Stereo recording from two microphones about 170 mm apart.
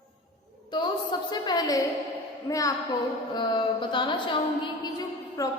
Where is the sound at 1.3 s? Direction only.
25° left (ahead or behind).